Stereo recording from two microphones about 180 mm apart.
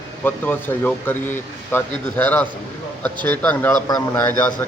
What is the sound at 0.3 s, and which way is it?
Speech, 10° left (ahead or behind).